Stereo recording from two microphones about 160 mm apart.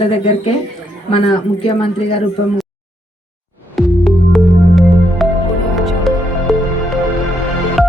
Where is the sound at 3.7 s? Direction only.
Centre (ahead or behind).